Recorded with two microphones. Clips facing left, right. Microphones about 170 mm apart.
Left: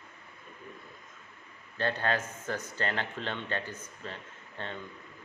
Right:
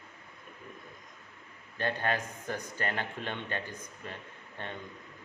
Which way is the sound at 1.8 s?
15° right (ahead or behind).